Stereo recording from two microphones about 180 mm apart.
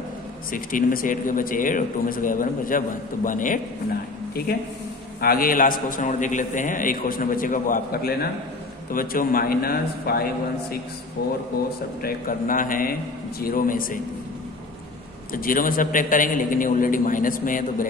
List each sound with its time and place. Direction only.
0.5 s a man's voice: 50° left (ahead or behind)
5.2 s a man's voice: 55° left (ahead or behind)
12.0 s a man's voice: 50° left (ahead or behind)
15.3 s a man's voice: 50° left (ahead or behind)